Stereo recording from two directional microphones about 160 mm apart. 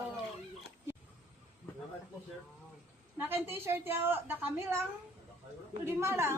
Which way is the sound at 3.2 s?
15° right (ahead or behind).